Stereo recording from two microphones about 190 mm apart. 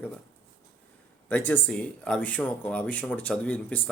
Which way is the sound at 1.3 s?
10° left (ahead or behind).